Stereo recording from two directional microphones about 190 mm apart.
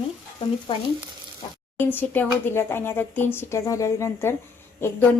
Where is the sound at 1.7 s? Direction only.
10° left (ahead or behind).